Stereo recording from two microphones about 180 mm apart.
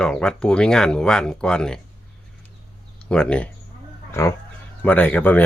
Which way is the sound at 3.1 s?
5° left (ahead or behind).